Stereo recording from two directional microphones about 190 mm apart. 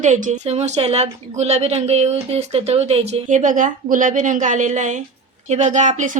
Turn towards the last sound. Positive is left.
turn(degrees=-40)  # may be behind; listen again after turning